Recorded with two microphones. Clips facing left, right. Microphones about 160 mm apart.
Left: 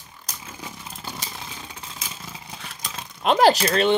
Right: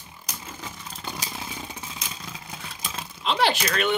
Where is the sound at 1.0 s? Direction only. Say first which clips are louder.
Right 2 dB; centre (ahead or behind).